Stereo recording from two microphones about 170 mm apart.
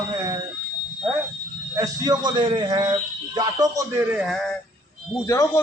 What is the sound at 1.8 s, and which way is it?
A man's voice, 20° right (ahead or behind).